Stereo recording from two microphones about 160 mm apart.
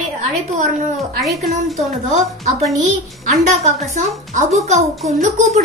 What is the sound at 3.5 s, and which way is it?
A woman's voice, 45° right (ahead or behind).